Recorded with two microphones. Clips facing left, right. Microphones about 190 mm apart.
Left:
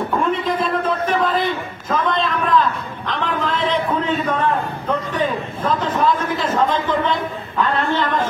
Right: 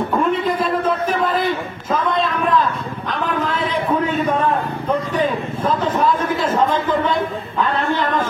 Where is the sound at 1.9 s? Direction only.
10° right (ahead or behind).